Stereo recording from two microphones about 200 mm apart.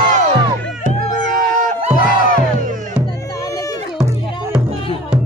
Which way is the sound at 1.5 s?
40° right (ahead or behind).